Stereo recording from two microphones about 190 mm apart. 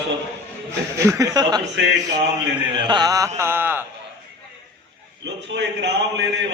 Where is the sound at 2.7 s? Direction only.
25° right (ahead or behind).